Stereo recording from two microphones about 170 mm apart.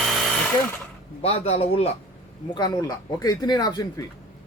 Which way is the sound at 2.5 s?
20° left (ahead or behind).